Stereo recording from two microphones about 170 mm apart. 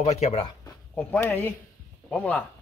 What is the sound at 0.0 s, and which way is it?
Speech, 40° left (ahead or behind).